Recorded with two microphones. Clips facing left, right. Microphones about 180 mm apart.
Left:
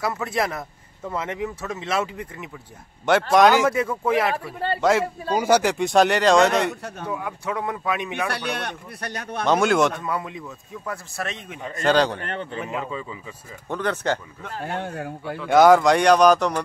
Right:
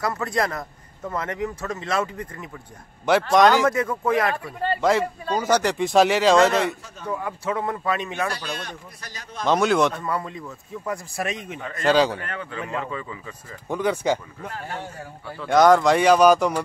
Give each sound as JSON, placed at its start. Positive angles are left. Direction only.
{"t": 0.0, "sound": "speech", "side_deg": 5}
{"t": 6.7, "sound": "speech", "side_deg": 65}
{"t": 7.1, "sound": "speech", "side_deg": 0}
{"t": 8.3, "sound": "speech", "side_deg": 65}
{"t": 9.5, "sound": "speech", "side_deg": 0}
{"t": 12.4, "sound": "speech", "side_deg": 20}
{"t": 13.7, "sound": "speech", "side_deg": -10}
{"t": 14.8, "sound": "speech", "side_deg": 60}
{"t": 15.3, "sound": "speech", "side_deg": 0}